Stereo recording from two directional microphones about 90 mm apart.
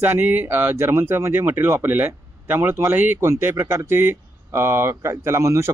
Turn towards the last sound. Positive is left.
turn(degrees=-35)  # may be behind; listen again after turning